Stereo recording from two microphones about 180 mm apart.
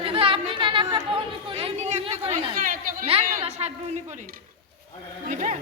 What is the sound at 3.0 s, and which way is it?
Speech, 35° right (ahead or behind).